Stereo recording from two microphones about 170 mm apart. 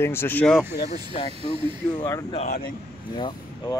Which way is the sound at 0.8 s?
40° left (ahead or behind).